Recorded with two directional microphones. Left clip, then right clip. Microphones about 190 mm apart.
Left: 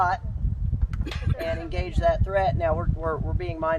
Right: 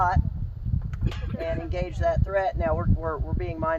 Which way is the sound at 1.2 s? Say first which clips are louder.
Left 1 dB; 45° left (ahead or behind).